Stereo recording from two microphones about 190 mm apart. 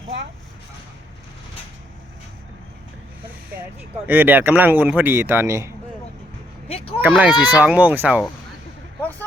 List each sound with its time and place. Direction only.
4.0 s speech: 10° right (ahead or behind)
6.7 s speech: 30° left (ahead or behind)
7.1 s speech: centre (ahead or behind)
9.0 s a sound: 10° left (ahead or behind)